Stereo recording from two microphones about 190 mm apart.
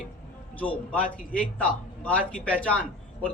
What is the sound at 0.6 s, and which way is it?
A man's voice, 10° left (ahead or behind).